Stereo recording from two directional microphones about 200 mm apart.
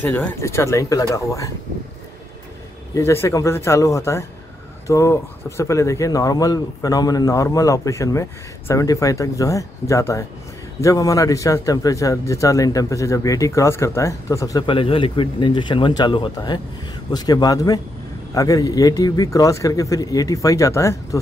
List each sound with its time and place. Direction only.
0.0 s a man's voice: 10° left (ahead or behind)
2.9 s a man's voice: 15° left (ahead or behind)